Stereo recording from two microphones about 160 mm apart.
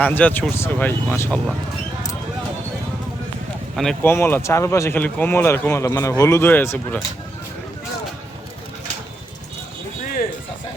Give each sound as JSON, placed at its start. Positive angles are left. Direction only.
{"t": 0.0, "sound": "speech", "side_deg": 10}
{"t": 4.0, "sound": "speech", "side_deg": 15}